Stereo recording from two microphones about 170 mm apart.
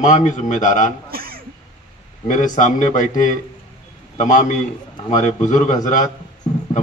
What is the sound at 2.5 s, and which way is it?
Speech, 50° left (ahead or behind).